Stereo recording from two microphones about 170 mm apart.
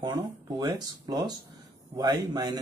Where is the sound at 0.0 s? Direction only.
25° right (ahead or behind).